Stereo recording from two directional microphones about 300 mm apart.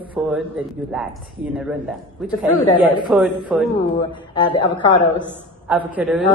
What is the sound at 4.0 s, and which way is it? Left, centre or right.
Speech, centre.